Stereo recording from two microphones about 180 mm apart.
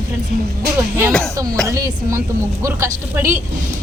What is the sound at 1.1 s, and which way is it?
Speech, 5° left (ahead or behind).